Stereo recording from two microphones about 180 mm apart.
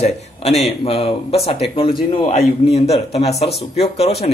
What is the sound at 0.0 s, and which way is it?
Speech, 35° left (ahead or behind).